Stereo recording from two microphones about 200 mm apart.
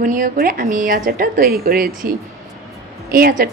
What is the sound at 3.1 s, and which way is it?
Speech, 45° right (ahead or behind).